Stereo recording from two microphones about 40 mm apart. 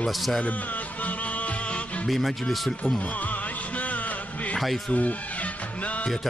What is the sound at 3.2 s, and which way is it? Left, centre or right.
Music, left.